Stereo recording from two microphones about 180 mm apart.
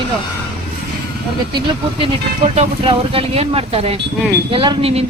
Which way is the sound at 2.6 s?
30° right (ahead or behind).